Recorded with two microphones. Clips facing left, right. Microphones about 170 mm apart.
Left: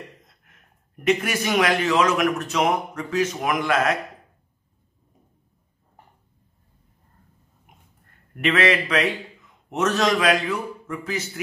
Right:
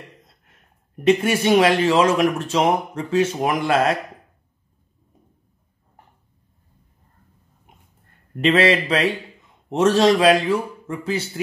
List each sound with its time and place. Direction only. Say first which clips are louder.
1.0 s speech: right 5 dB; 30° right (ahead or behind)
8.4 s a man's voice: right 4 dB; 30° right (ahead or behind)